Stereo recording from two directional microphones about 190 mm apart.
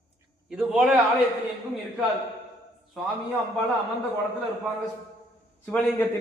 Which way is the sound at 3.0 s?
Centre (ahead or behind).